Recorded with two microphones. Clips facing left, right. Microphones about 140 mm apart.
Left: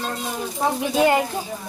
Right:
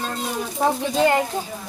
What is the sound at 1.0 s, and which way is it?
Speech, 15° left (ahead or behind).